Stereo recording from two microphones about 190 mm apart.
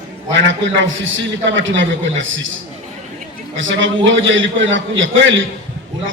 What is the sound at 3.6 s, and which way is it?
A man's voice, 85° right.